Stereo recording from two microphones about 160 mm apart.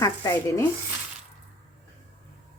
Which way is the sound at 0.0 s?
20° left (ahead or behind).